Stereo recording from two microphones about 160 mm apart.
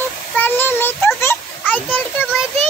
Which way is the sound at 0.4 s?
10° left (ahead or behind).